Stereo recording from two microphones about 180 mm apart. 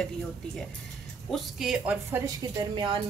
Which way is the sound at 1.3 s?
5° right (ahead or behind).